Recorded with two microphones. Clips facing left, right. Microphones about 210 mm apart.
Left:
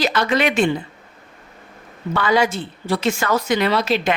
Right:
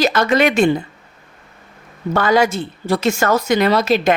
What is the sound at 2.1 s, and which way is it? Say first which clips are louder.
Speech: right 3 dB; 45° right (ahead or behind).